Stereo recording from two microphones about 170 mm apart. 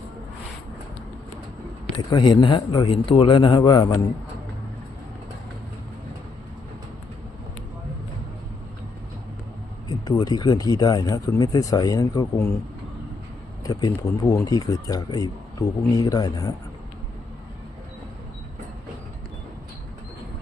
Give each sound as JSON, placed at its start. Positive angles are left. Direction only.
{"t": 2.0, "sound": "speech", "side_deg": 25}
{"t": 9.9, "sound": "speech", "side_deg": 25}
{"t": 13.7, "sound": "speech", "side_deg": 20}